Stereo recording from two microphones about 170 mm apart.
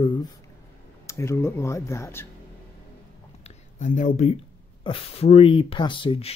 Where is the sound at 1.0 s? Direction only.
15° left (ahead or behind).